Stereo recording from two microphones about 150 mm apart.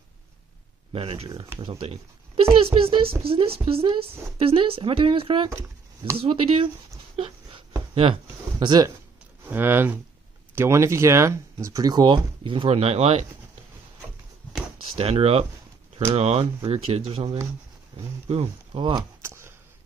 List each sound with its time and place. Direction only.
0.9 s a woman's voice: 40° right (ahead or behind)
5.5 s speech: 20° right (ahead or behind)
6.1 s a woman's voice: 40° right (ahead or behind)
7.2 s a sound: 40° right (ahead or behind)
9.5 s speech: 15° right (ahead or behind); by 13.2 s 45° right (ahead or behind)
15.0 s a woman's voice: 40° right (ahead or behind)
19.2 s a sound: 15° right (ahead or behind)